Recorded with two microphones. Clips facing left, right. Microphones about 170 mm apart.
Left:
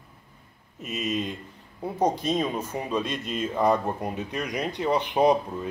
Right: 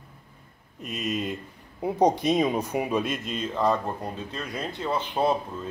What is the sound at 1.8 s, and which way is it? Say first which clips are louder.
Speech: right 3 dB; 10° right (ahead or behind).